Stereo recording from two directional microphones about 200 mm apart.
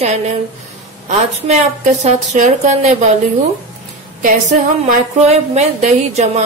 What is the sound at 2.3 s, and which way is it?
Speech, 40° right (ahead or behind).